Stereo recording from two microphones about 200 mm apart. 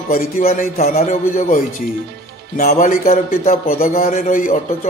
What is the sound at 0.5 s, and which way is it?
A man's voice, 30° left (ahead or behind).